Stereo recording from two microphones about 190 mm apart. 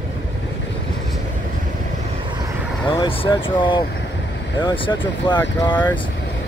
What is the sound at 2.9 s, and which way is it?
Speech, 25° left (ahead or behind).